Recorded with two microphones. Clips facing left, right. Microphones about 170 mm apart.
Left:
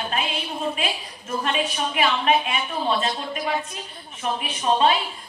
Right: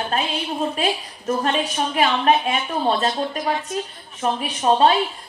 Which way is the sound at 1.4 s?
40° right (ahead or behind).